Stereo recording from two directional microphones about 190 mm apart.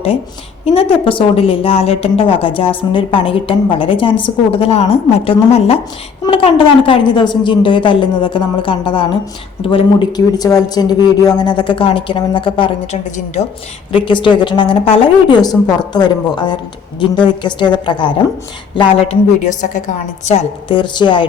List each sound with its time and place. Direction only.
0.6 s a woman's voice: 30° left (ahead or behind)